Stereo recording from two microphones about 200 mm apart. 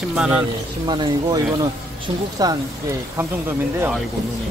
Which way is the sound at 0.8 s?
20° right (ahead or behind).